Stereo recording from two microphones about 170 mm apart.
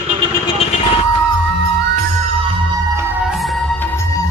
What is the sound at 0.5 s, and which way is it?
Vehicle, 35° left (ahead or behind).